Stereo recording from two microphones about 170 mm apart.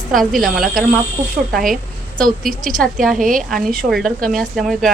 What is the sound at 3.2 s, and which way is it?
Speech, 50° right (ahead or behind).